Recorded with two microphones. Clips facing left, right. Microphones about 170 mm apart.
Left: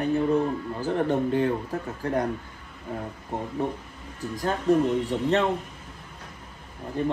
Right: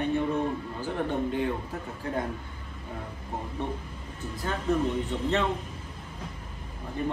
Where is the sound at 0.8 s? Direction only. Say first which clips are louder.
Left 6 dB; 40° left (ahead or behind).